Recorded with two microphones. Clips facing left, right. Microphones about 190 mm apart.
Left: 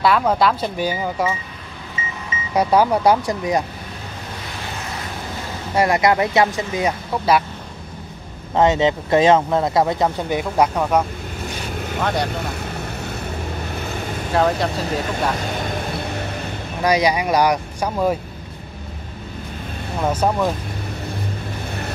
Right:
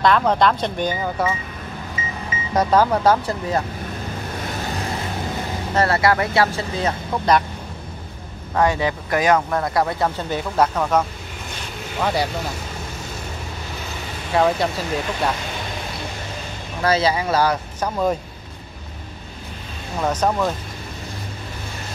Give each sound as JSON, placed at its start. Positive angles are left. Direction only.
{"t": 0.0, "sound": "speech", "side_deg": 5}
{"t": 2.5, "sound": "speech", "side_deg": 10}
{"t": 5.8, "sound": "speech", "side_deg": 15}
{"t": 8.5, "sound": "speech", "side_deg": 20}
{"t": 12.0, "sound": "speech", "side_deg": -5}
{"t": 14.3, "sound": "speech", "side_deg": 0}
{"t": 16.8, "sound": "speech", "side_deg": 15}
{"t": 20.0, "sound": "speech", "side_deg": 10}